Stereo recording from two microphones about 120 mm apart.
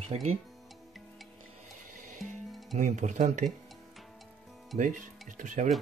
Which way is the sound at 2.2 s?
Centre (ahead or behind).